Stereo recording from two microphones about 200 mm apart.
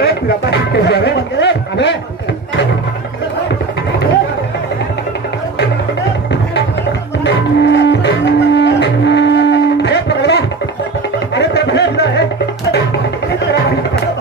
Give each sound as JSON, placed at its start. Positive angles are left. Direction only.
{"t": 0.0, "sound": "speech", "side_deg": 55}
{"t": 7.2, "sound": "music", "side_deg": 60}
{"t": 11.3, "sound": "a sound", "side_deg": 60}